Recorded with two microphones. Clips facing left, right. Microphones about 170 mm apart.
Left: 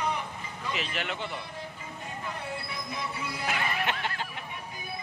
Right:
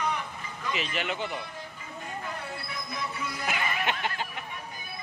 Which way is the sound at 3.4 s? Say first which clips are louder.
Even; centre (ahead or behind).